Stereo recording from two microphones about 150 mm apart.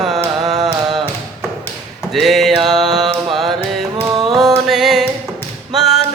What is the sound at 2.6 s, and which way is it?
Mantra, centre (ahead or behind).